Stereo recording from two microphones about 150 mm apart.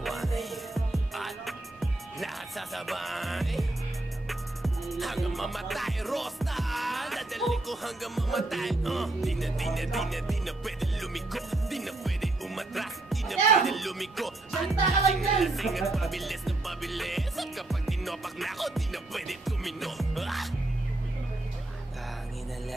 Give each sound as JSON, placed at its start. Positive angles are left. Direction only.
{"t": 0.0, "sound": "music", "side_deg": 0}